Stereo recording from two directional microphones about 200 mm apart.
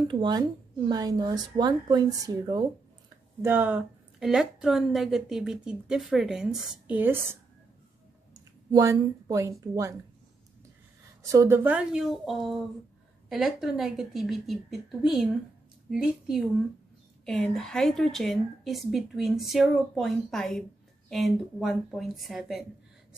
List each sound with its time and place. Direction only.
0.1 s a woman's voice: 25° right (ahead or behind)
11.2 s a woman's voice: 15° right (ahead or behind)